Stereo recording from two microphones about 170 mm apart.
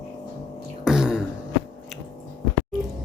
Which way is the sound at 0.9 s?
5° right (ahead or behind).